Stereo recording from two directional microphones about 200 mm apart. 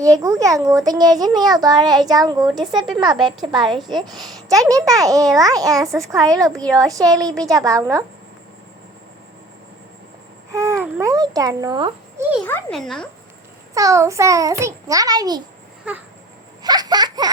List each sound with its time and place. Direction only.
0.0 s a child's voice: 15° right (ahead or behind)
10.5 s babbling: 15° right (ahead or behind)
11.0 s a child's voice: 20° right (ahead or behind)
12.5 s speech: 5° left (ahead or behind)
13.7 s a woman's voice: 15° right (ahead or behind)
16.6 s baby laughter: 20° right (ahead or behind)